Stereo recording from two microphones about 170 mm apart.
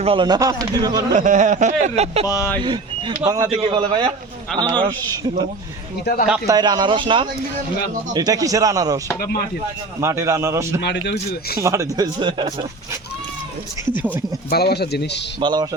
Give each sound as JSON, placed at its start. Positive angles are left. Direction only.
{"t": 0.0, "sound": "speech", "side_deg": -30}
{"t": 1.1, "sound": "speech", "side_deg": -45}
{"t": 2.2, "sound": "speech", "side_deg": 20}
{"t": 3.2, "sound": "speech", "side_deg": -20}
{"t": 3.6, "sound": "a man's voice", "side_deg": -30}
{"t": 6.1, "sound": "speech", "side_deg": 70}
{"t": 6.5, "sound": "speech", "side_deg": -25}
{"t": 10.0, "sound": "a man's voice", "side_deg": -15}
{"t": 12.2, "sound": "speech", "side_deg": -25}
{"t": 13.9, "sound": "a man's voice", "side_deg": -10}
{"t": 14.5, "sound": "speech", "side_deg": 70}
{"t": 15.4, "sound": "speech", "side_deg": -25}